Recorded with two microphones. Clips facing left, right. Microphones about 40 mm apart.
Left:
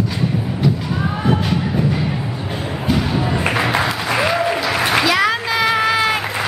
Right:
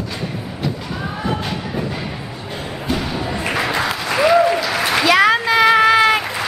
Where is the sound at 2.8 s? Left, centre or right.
Centre.